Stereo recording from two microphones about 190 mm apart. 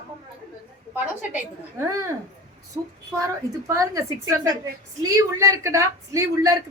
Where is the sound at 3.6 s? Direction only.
15° right (ahead or behind).